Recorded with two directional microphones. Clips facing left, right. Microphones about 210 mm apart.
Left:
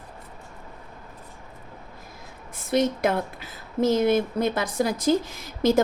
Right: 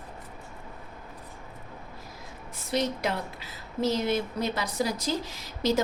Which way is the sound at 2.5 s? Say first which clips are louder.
Left 6 dB; 50° left (ahead or behind).